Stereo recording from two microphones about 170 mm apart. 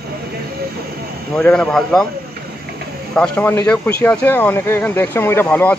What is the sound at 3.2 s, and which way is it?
Speech, 10° left (ahead or behind).